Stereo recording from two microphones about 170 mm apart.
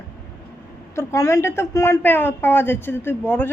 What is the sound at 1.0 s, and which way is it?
A woman's voice, 15° left (ahead or behind).